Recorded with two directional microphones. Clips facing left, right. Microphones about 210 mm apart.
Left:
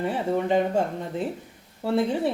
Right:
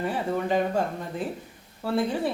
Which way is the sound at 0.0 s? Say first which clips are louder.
Left 2 dB; 25° left (ahead or behind).